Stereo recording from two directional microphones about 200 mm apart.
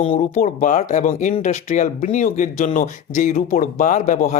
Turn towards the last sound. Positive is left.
turn(degrees=40)  # may be behind; listen again after turning